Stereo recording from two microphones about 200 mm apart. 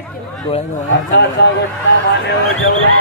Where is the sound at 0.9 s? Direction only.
60° left (ahead or behind).